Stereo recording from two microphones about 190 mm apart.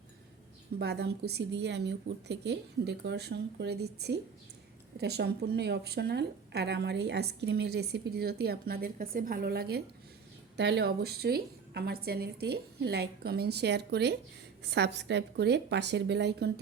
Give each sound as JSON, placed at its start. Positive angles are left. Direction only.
{"t": 0.8, "sound": "a woman's voice", "side_deg": -60}